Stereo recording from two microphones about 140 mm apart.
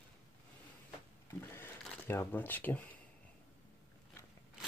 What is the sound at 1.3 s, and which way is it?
Sewing machine, 15° left (ahead or behind).